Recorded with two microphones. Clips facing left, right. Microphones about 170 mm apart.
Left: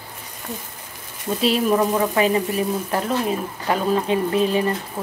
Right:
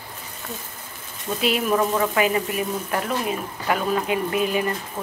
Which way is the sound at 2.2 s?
35° left (ahead or behind).